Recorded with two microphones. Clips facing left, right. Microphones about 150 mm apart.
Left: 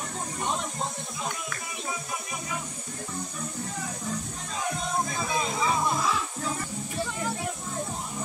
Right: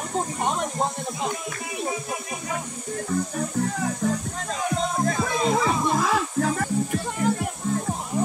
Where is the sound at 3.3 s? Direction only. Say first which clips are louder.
Right 9 dB; 75° right (ahead or behind).